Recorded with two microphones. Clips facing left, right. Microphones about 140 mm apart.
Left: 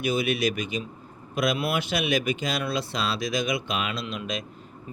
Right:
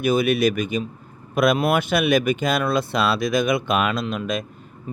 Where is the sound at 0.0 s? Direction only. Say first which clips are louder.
Right 6 dB; 50° right (ahead or behind).